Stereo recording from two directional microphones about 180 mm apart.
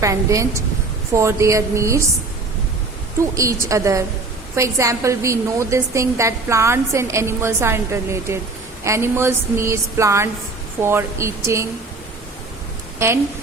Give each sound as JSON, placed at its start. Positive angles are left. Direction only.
{"t": 0.0, "sound": "a woman's voice", "side_deg": -15}
{"t": 3.2, "sound": "a woman's voice", "side_deg": -15}
{"t": 13.0, "sound": "a woman's voice", "side_deg": -15}